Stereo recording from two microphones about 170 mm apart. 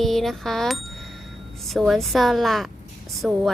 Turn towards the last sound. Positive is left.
turn(degrees=0)  # may be behind; listen again after turning